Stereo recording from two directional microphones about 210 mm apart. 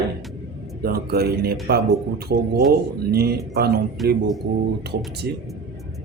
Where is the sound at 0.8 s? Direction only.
45° right (ahead or behind).